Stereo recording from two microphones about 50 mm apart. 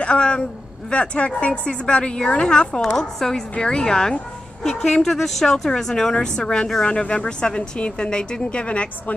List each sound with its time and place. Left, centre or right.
0.0 s a woman's voice: left